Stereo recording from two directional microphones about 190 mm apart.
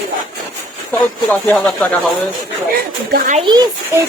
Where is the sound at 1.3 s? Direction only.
5° left (ahead or behind).